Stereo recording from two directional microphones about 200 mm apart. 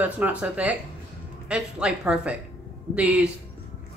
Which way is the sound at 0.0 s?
5° right (ahead or behind).